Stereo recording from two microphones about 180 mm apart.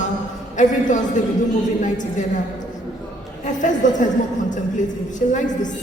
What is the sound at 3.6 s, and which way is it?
Speech, 45° left (ahead or behind).